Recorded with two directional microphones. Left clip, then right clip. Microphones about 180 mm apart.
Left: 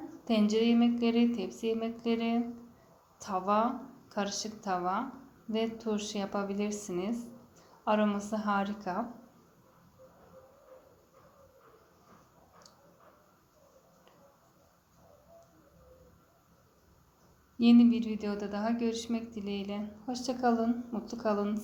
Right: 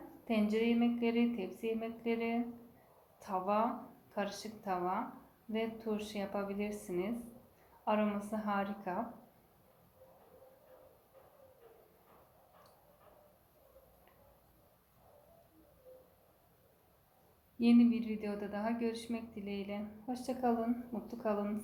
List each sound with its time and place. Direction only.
0.3 s a woman's voice: 40° left (ahead or behind)
17.6 s a woman's voice: 40° left (ahead or behind)